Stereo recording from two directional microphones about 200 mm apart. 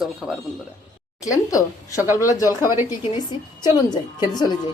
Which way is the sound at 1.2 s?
15° left (ahead or behind).